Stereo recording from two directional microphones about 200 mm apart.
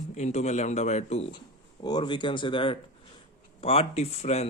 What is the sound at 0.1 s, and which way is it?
Speech, 35° left (ahead or behind).